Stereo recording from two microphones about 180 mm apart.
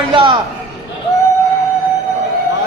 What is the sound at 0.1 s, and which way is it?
Speech, 30° right (ahead or behind).